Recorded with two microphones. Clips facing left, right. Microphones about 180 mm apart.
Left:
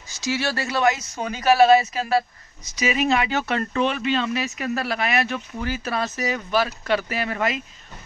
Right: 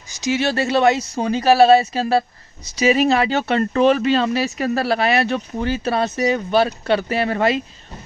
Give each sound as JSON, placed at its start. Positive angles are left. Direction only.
{"t": 0.1, "sound": "speech", "side_deg": -20}
{"t": 3.7, "sound": "speech", "side_deg": -40}